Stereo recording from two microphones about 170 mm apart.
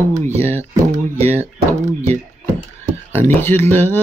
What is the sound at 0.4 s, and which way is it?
Speech, 15° left (ahead or behind).